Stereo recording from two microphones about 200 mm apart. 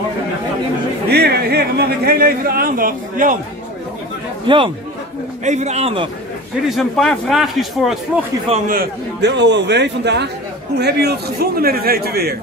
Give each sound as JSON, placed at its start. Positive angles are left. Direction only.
{"t": 1.1, "sound": "speech", "side_deg": -55}
{"t": 4.5, "sound": "a man's voice", "side_deg": -25}
{"t": 5.4, "sound": "a man's voice", "side_deg": -35}
{"t": 6.7, "sound": "a man's voice", "side_deg": 0}
{"t": 8.6, "sound": "a man's voice", "side_deg": -55}